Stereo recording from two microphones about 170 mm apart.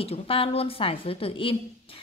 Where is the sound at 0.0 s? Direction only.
35° left (ahead or behind).